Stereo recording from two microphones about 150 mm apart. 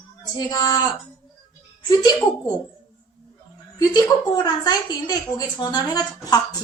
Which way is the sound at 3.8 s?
25° left (ahead or behind).